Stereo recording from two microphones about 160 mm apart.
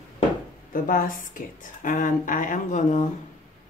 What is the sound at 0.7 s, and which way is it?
Speech, 60° left (ahead or behind).